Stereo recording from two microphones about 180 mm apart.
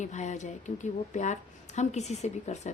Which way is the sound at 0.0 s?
40° left (ahead or behind).